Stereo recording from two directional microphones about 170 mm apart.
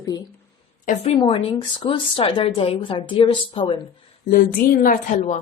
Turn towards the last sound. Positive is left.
turn(degrees=45)  # may be behind; listen again after turning